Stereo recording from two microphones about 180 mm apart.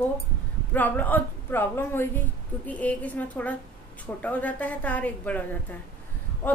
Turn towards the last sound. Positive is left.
turn(degrees=10)  # may be behind; listen again after turning